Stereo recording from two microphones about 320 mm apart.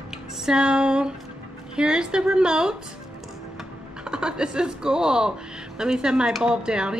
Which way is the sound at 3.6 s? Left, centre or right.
Centre.